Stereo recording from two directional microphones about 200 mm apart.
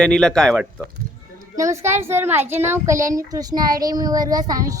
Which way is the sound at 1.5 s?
15° right (ahead or behind).